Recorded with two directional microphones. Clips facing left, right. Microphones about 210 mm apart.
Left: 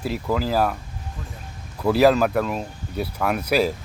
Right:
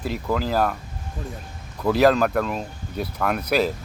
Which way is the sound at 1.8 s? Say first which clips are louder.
Left 1 dB; 5° left (ahead or behind).